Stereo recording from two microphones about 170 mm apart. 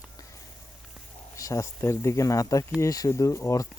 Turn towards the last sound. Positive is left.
turn(degrees=20)  # may be behind; listen again after turning